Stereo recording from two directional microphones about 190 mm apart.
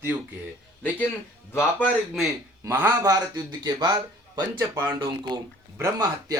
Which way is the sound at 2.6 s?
10° right (ahead or behind).